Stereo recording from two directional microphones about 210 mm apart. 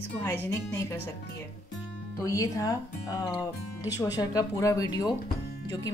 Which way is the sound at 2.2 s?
15° left (ahead or behind).